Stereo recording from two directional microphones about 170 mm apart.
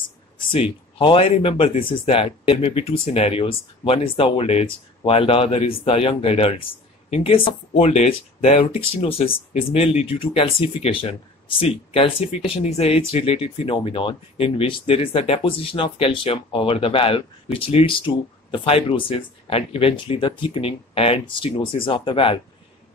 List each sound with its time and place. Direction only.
0.5 s speech: 35° left (ahead or behind)